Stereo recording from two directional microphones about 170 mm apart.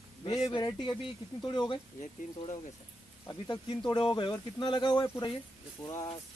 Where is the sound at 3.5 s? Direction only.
25° left (ahead or behind).